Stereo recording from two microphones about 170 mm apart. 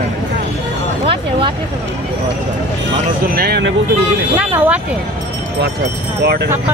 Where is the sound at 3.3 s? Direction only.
65° right (ahead or behind).